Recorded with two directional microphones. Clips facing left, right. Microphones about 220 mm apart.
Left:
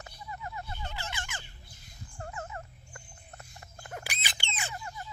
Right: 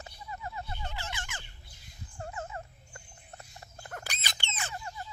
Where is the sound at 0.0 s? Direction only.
25° right (ahead or behind).